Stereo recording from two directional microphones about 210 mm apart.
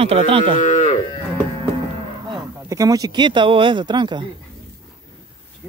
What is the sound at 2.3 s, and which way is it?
Speech, 15° right (ahead or behind).